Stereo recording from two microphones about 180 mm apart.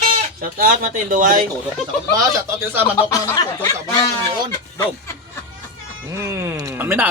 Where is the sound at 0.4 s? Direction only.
50° right (ahead or behind).